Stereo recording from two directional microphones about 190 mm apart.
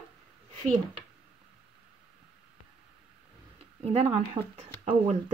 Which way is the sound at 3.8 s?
30° right (ahead or behind).